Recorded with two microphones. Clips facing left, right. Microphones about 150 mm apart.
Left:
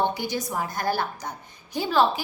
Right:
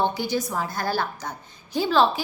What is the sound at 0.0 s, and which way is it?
A woman's voice, 15° left (ahead or behind).